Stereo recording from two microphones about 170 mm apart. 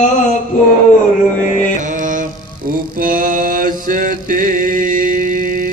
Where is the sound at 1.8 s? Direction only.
50° right (ahead or behind).